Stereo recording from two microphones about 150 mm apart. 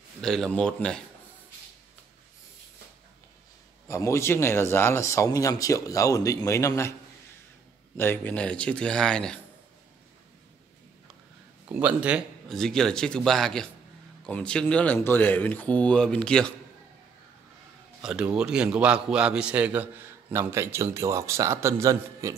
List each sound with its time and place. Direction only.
0.2 s a man's voice: 5° left (ahead or behind)
3.8 s a man's voice: 20° left (ahead or behind)
8.0 s speech: 15° left (ahead or behind)
11.7 s a man's voice: 10° right (ahead or behind)
12.4 s a man's voice: 5° left (ahead or behind)
18.0 s a man's voice: 5° right (ahead or behind)